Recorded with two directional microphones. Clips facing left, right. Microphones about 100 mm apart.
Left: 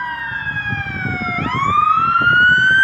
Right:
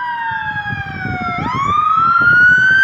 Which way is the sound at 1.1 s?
20° right (ahead or behind).